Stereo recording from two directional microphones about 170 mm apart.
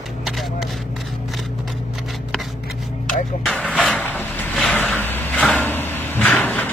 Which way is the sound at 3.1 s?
50° left (ahead or behind).